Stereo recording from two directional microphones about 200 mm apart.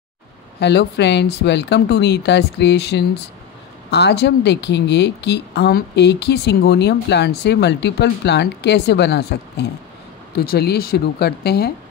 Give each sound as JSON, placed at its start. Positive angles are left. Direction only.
{"t": 0.6, "sound": "speech", "side_deg": 60}